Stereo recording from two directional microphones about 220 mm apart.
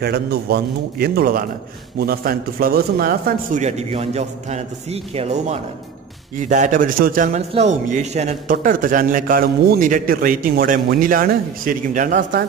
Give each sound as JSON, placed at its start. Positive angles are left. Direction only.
{"t": 0.0, "sound": "a man's voice", "side_deg": -45}